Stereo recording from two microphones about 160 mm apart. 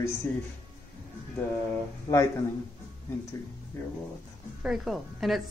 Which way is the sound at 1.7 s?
20° left (ahead or behind).